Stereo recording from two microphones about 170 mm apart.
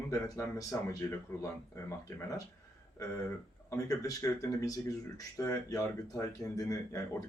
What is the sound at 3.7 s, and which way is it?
Speech, 20° left (ahead or behind).